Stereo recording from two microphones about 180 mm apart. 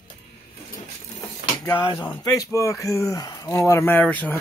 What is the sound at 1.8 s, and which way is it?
Speech, 25° left (ahead or behind).